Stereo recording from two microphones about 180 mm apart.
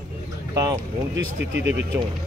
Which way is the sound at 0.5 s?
15° right (ahead or behind).